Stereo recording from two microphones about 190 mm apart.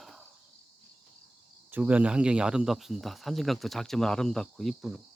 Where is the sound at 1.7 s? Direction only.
5° right (ahead or behind).